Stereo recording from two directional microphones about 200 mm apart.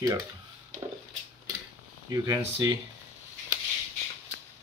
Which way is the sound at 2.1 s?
20° right (ahead or behind).